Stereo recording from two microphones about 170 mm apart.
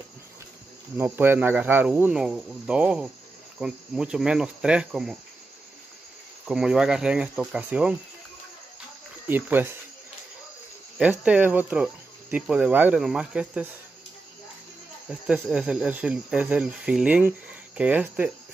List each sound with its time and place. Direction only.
0.9 s speech: 15° right (ahead or behind)
6.4 s speech: 5° right (ahead or behind)
9.3 s speech: 10° right (ahead or behind)
11.0 s speech: 10° right (ahead or behind)
15.0 s speech: 10° right (ahead or behind)